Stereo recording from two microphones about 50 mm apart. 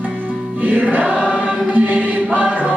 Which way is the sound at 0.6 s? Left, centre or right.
Right.